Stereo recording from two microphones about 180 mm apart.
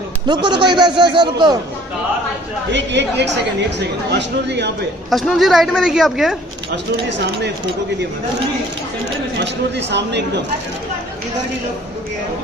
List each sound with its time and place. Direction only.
0.3 s speech: 25° right (ahead or behind)
2.7 s speech: 75° right (ahead or behind)
5.1 s speech: centre (ahead or behind)
6.7 s speech: 75° right (ahead or behind)
9.4 s speech: 75° right (ahead or behind)